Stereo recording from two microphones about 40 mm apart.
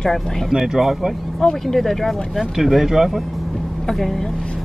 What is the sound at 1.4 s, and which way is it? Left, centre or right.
Speech, centre.